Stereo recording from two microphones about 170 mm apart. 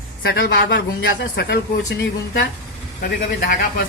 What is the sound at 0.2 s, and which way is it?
Speech, 70° left (ahead or behind).